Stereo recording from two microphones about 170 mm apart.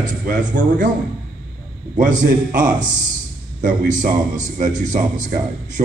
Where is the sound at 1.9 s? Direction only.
50° right (ahead or behind).